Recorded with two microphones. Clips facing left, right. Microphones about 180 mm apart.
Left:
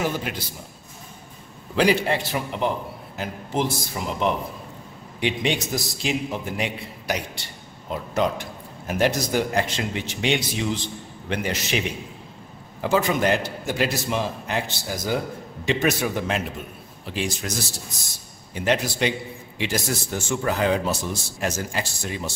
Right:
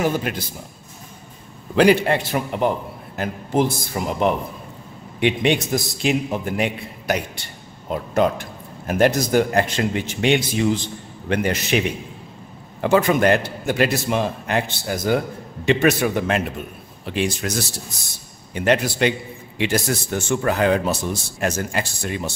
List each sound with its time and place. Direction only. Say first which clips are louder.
0.0 s a man's voice: right 5 dB; 50° right (ahead or behind)
1.8 s a man's voice: right 5 dB; 55° right (ahead or behind)
12.8 s speech: right 5 dB; 60° right (ahead or behind)
18.5 s speech: right 4 dB; 60° right (ahead or behind)